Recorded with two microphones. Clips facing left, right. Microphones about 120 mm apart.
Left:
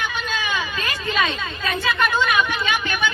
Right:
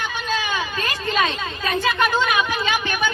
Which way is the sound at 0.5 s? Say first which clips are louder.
Right 1 dB; 40° right (ahead or behind).